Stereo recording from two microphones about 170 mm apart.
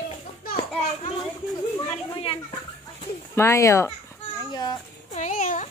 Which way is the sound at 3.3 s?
15° left (ahead or behind).